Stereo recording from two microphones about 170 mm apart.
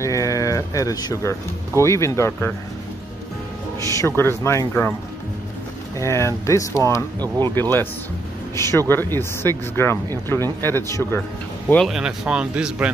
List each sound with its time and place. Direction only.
0.0 s speech: 20° left (ahead or behind)
3.8 s speech: 20° left (ahead or behind)
5.9 s speech: 15° left (ahead or behind)
7.2 s speech: 25° right (ahead or behind)
8.5 s speech: 15° left (ahead or behind)
11.7 s speech: centre (ahead or behind)